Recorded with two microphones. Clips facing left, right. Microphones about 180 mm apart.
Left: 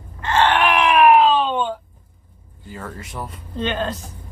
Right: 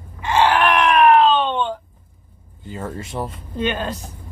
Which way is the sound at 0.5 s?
Centre (ahead or behind).